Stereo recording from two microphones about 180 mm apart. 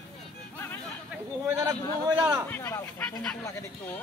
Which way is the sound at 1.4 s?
15° right (ahead or behind).